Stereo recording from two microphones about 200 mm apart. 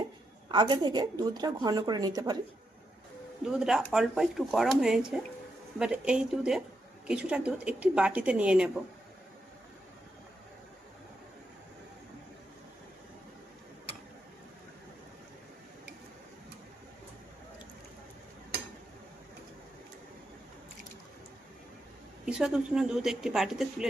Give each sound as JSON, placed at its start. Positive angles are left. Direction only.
{"t": 0.4, "sound": "a woman's voice", "side_deg": -20}
{"t": 3.4, "sound": "speech", "side_deg": -5}
{"t": 22.3, "sound": "speech", "side_deg": -5}